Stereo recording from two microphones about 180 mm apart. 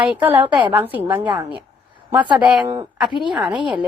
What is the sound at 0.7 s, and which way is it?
Speech, 10° right (ahead or behind).